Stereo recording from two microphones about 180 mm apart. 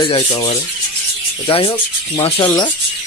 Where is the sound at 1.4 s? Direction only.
30° left (ahead or behind).